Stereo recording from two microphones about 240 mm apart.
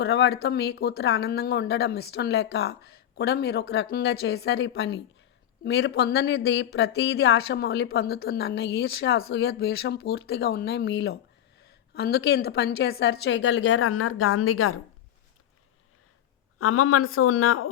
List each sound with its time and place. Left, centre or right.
0.0 s speech: left
16.6 s speech: left